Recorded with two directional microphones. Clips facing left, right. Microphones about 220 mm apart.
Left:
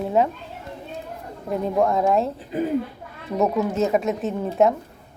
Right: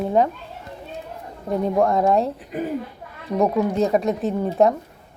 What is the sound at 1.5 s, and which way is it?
Speech, centre (ahead or behind).